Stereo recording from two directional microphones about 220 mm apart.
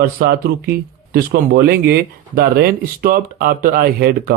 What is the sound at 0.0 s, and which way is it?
Speech, 45° right (ahead or behind).